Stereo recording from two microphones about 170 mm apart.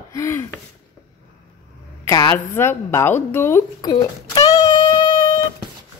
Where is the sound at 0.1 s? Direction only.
15° left (ahead or behind).